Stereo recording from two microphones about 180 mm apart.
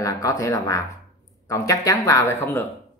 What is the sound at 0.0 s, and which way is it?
Speech, 20° left (ahead or behind).